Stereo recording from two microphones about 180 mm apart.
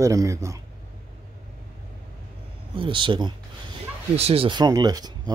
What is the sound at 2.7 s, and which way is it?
Speech, 25° right (ahead or behind).